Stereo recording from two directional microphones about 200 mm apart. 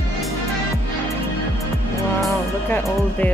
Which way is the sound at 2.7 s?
10° left (ahead or behind).